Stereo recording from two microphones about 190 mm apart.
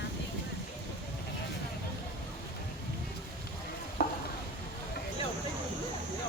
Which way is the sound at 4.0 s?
55° left (ahead or behind).